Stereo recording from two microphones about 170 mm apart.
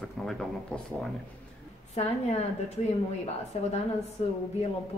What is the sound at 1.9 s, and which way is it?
Speech, 40° left (ahead or behind).